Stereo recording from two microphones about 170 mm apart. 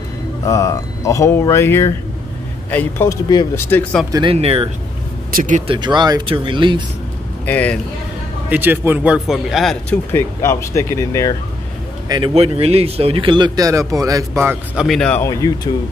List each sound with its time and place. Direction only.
0.5 s speech: 20° left (ahead or behind)
4.1 s speech: 30° right (ahead or behind)
5.3 s speech: 55° right (ahead or behind)
5.7 s speech: 25° right (ahead or behind)
7.4 s speech: 10° left (ahead or behind)
8.5 s speech: 10° right (ahead or behind)
10.1 s speech: 15° left (ahead or behind)
12.1 s speech: 30° right (ahead or behind); by 14.9 s 15° right (ahead or behind)
14.9 s a man's voice: 5° left (ahead or behind)
15.2 s speech: 20° left (ahead or behind)